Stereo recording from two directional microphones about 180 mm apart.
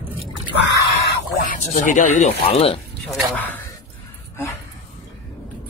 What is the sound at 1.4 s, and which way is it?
Speech, 45° left (ahead or behind).